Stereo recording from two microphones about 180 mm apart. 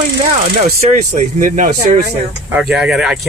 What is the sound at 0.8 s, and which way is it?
Speech, 40° right (ahead or behind).